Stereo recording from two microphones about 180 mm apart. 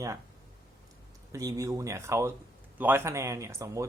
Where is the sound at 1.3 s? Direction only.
15° right (ahead or behind).